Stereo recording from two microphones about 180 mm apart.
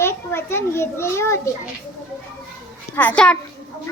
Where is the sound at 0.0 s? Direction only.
15° left (ahead or behind).